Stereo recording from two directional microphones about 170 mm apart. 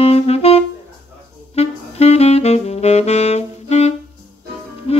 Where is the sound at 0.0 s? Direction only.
35° left (ahead or behind).